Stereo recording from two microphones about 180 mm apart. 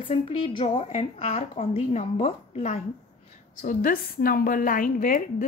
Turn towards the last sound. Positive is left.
turn(degrees=45)  # may be behind; listen again after turning